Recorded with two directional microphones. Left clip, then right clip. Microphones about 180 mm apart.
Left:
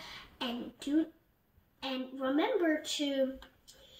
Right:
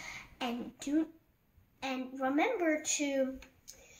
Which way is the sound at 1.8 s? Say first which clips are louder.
Right 1 dB; 20° right (ahead or behind).